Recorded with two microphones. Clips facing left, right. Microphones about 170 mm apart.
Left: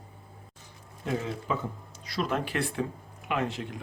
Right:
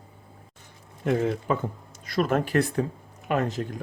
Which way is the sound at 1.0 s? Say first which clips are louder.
Right 7 dB; 50° right (ahead or behind).